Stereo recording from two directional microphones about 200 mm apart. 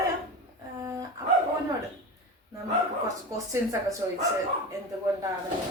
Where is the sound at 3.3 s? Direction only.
15° right (ahead or behind).